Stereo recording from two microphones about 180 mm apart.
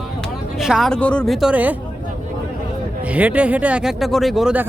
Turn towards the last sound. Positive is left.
turn(degrees=-5)  # may be behind; listen again after turning